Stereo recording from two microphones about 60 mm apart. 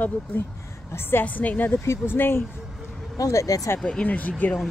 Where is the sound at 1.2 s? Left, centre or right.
Left.